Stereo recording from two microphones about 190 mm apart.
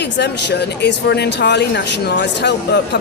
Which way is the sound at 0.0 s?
65° left (ahead or behind).